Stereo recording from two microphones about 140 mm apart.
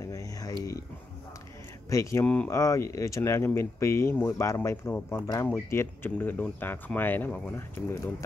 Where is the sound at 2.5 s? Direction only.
20° left (ahead or behind).